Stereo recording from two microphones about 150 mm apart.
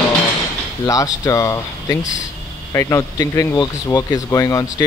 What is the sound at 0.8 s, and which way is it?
Speech, 25° left (ahead or behind).